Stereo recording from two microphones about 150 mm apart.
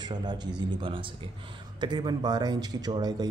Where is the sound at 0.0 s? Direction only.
30° right (ahead or behind).